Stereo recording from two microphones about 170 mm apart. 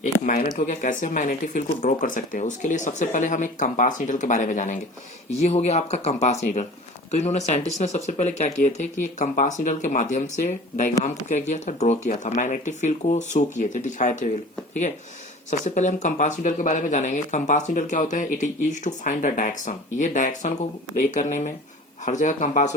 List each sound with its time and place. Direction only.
0.0 s speech: 55° left (ahead or behind)
15.4 s speech: 45° left (ahead or behind)